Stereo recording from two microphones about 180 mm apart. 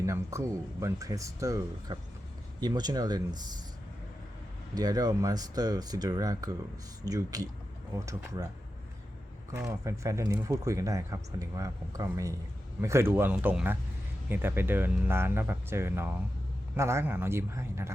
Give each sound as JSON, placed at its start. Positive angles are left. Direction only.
{"t": 0.0, "sound": "speech", "side_deg": -15}
{"t": 4.7, "sound": "speech", "side_deg": -20}
{"t": 9.5, "sound": "speech", "side_deg": -15}